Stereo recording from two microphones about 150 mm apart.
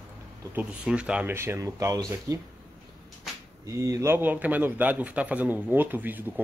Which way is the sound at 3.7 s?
20° right (ahead or behind).